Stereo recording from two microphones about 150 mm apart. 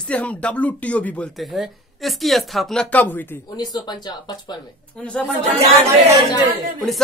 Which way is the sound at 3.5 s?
25° left (ahead or behind).